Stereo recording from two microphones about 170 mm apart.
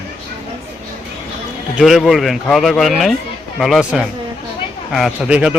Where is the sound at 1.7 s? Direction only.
Centre (ahead or behind).